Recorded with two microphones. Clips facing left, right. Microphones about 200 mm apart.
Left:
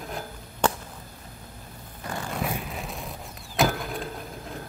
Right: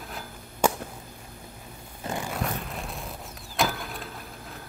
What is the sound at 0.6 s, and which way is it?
Whip, 10° right (ahead or behind).